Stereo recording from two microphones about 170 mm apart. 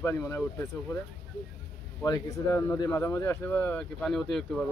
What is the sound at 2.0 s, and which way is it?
Speech, 20° left (ahead or behind).